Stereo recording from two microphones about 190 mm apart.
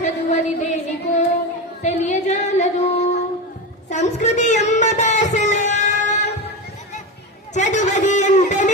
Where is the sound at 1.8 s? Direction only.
35° left (ahead or behind).